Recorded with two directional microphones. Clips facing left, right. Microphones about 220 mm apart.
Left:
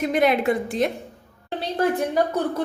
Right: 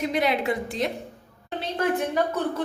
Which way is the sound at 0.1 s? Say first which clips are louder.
Left 5 dB; 50° left (ahead or behind).